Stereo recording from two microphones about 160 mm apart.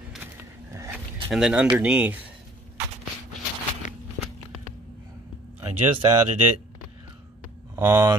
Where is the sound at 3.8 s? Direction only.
50° left (ahead or behind).